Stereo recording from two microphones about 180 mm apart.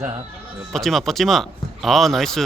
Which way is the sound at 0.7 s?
Centre (ahead or behind).